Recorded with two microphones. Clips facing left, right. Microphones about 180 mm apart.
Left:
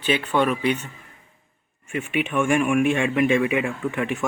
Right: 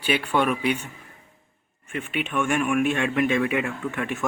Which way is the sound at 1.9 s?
5° left (ahead or behind).